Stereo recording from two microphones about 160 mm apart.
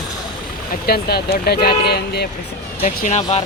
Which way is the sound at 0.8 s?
75° left (ahead or behind).